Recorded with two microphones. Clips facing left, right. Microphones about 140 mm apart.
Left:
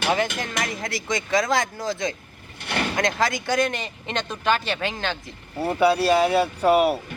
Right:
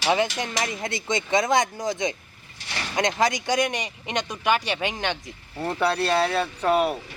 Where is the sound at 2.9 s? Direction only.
20° right (ahead or behind).